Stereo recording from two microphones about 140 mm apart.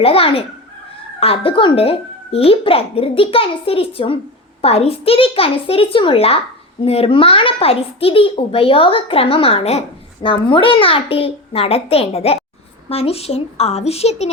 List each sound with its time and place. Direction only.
0.0 s a child's voice: 40° left (ahead or behind)